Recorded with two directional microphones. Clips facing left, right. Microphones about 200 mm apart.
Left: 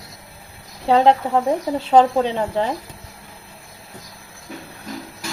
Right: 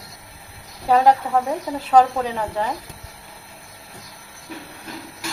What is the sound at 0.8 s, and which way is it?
Speech, 25° left (ahead or behind).